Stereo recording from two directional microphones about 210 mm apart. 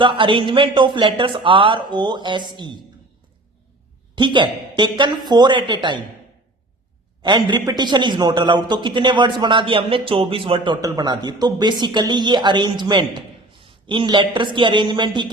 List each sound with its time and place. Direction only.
0.0 s a man's voice: 25° right (ahead or behind)
4.1 s a man's voice: 20° right (ahead or behind)
7.2 s a man's voice: 20° right (ahead or behind)